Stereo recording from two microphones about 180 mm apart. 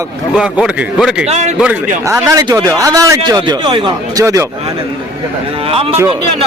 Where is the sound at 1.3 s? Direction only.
40° right (ahead or behind).